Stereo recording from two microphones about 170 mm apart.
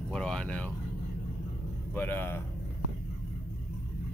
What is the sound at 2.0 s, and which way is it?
Speech, 10° left (ahead or behind).